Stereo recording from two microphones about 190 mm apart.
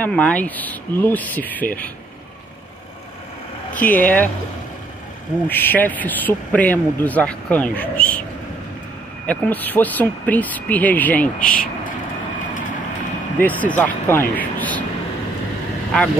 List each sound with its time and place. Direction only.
0.0 s speech: 5° left (ahead or behind)
3.7 s speech: 10° left (ahead or behind)
5.5 s speech: 10° left (ahead or behind)
9.2 s speech: 10° left (ahead or behind)
11.4 s speech: 45° left (ahead or behind)
13.4 s speech: 10° left (ahead or behind)